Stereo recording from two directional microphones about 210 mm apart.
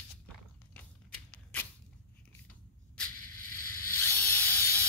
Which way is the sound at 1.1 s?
5° left (ahead or behind).